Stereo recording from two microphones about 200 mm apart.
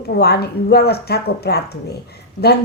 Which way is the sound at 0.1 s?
55° left (ahead or behind).